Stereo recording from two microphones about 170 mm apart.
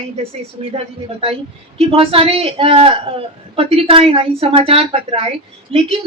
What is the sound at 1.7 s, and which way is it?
Speech, 35° right (ahead or behind).